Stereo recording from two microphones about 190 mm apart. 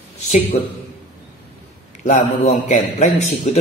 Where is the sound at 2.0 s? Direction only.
35° left (ahead or behind).